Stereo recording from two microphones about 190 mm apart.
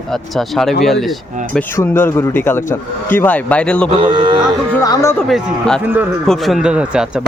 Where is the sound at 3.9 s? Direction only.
25° right (ahead or behind).